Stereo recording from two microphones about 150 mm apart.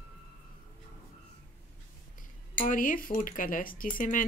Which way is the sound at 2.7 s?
65° left (ahead or behind).